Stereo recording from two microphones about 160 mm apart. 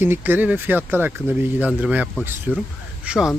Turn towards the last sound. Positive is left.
turn(degrees=-5)  # may be behind; listen again after turning